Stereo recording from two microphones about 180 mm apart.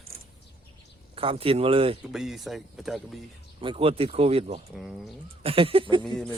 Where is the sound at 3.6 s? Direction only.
30° right (ahead or behind).